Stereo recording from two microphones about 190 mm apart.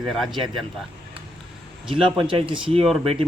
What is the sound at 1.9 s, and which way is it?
Speech, 30° right (ahead or behind).